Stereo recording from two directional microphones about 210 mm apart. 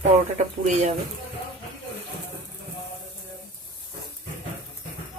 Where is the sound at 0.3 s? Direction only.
35° right (ahead or behind).